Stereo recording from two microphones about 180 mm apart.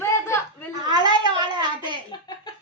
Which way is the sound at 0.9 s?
25° right (ahead or behind).